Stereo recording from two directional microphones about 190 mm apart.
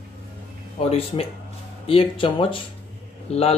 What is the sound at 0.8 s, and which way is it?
Speech, 30° left (ahead or behind).